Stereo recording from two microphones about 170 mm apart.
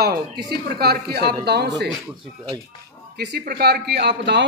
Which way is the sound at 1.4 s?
85° right.